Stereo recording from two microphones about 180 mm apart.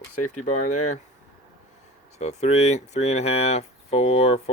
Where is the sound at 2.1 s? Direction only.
35° left (ahead or behind).